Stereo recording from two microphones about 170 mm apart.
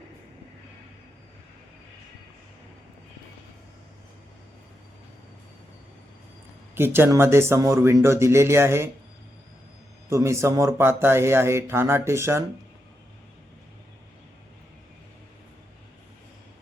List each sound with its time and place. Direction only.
6.7 s speech: 15° right (ahead or behind)
10.1 s speech: 15° right (ahead or behind)